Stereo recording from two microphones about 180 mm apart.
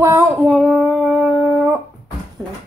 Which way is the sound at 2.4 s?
20° right (ahead or behind).